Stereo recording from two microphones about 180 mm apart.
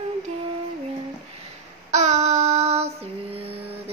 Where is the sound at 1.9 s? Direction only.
40° right (ahead or behind).